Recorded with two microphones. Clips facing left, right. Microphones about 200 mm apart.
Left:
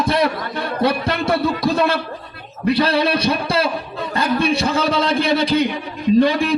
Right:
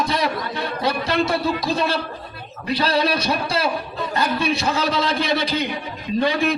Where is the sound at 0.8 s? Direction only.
55° left (ahead or behind).